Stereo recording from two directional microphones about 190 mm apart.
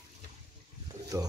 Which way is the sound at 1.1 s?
15° right (ahead or behind).